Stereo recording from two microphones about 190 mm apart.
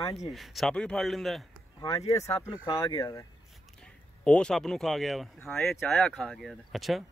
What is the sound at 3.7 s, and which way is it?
Speech, 5° left (ahead or behind).